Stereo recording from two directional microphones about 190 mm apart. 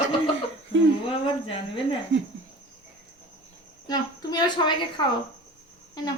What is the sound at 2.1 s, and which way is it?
Cricket, 75° right (ahead or behind).